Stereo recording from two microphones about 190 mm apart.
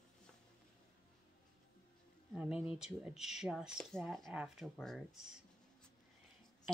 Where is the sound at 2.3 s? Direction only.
5° right (ahead or behind).